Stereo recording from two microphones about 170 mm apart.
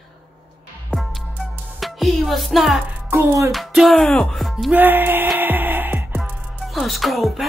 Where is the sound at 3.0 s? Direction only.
15° right (ahead or behind).